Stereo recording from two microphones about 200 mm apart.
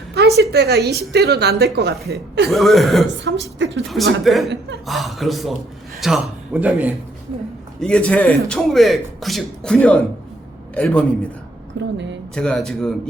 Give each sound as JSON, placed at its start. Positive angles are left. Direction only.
{"t": 0.2, "sound": "a sound", "side_deg": -55}
{"t": 0.5, "sound": "a woman's voice", "side_deg": -55}
{"t": 2.5, "sound": "a man's voice", "side_deg": 0}
{"t": 3.2, "sound": "a woman's voice", "side_deg": -65}
{"t": 3.8, "sound": "a man's voice", "side_deg": 0}
{"t": 7.8, "sound": "a man's voice", "side_deg": 5}
{"t": 11.8, "sound": "a woman's voice", "side_deg": -65}
{"t": 12.3, "sound": "a man's voice", "side_deg": 5}